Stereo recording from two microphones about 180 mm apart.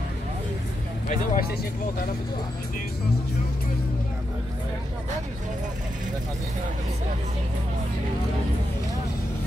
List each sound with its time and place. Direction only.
1.0 s speech: 40° left (ahead or behind)